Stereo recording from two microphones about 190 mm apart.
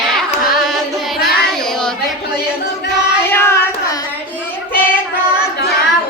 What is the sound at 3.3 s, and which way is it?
Carnatic music, 15° left (ahead or behind).